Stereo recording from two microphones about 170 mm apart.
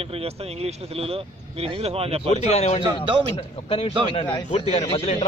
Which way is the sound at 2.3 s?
40° left (ahead or behind).